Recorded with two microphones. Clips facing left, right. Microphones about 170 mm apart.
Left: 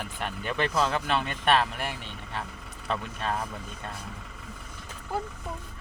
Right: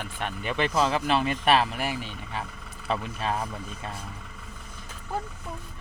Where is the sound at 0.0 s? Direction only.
Centre (ahead or behind).